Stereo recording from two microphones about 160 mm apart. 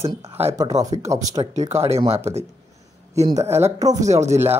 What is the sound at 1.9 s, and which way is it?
Speech, 40° right (ahead or behind).